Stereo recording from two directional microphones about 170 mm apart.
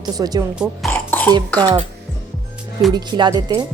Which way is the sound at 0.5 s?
5° right (ahead or behind).